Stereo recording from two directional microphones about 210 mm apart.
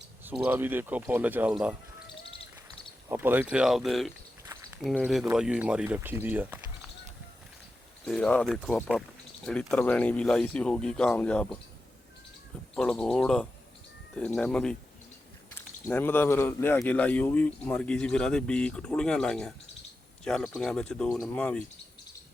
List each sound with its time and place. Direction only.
0.3 s speech: 10° right (ahead or behind)
3.1 s speech: 10° right (ahead or behind)
8.0 s speech: 5° left (ahead or behind)
12.7 s speech: 5° left (ahead or behind)
15.9 s speech: 10° left (ahead or behind)